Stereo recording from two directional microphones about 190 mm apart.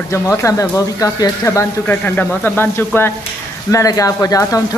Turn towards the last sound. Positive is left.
turn(degrees=20)  # may be behind; listen again after turning